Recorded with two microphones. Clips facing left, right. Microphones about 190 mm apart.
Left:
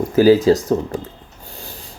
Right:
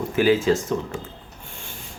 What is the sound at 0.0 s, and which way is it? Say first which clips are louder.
Speech: left 7 dB; 40° left (ahead or behind).